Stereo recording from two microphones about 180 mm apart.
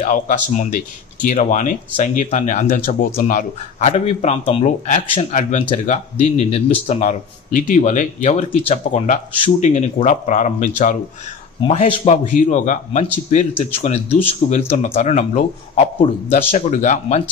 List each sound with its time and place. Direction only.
0.0 s speech: 40° left (ahead or behind)